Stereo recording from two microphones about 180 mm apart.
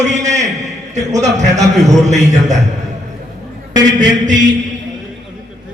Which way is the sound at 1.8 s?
40° right (ahead or behind).